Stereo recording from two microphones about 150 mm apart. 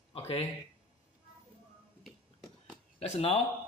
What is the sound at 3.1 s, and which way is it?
Speech, 45° left (ahead or behind).